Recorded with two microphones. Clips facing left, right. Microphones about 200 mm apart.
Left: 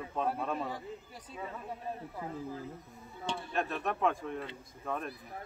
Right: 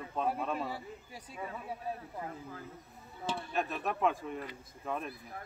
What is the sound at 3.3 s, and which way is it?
Speech, centre (ahead or behind).